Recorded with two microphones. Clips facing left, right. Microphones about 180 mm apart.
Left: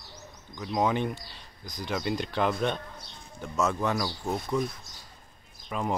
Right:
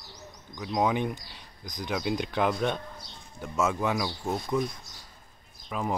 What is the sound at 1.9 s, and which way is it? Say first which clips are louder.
Speech: right 1 dB; centre (ahead or behind).